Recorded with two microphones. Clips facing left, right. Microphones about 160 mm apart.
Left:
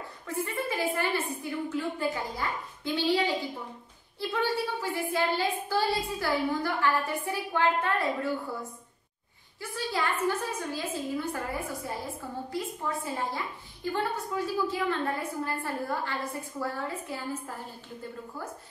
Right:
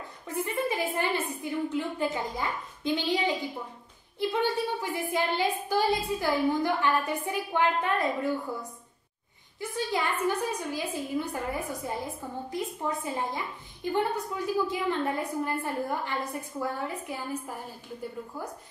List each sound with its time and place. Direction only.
0.3 s a sound: 20° right (ahead or behind)
0.9 s a woman's voice: 20° right (ahead or behind)
4.2 s a woman's voice: 20° right (ahead or behind)
9.6 s a woman's voice: 20° right (ahead or behind)